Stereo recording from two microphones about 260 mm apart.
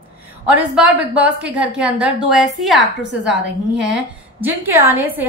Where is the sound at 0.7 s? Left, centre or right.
Centre.